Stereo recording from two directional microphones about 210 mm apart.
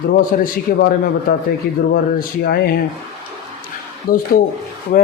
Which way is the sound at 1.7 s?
45° left (ahead or behind).